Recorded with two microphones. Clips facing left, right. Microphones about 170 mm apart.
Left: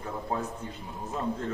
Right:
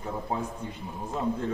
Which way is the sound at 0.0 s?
10° right (ahead or behind).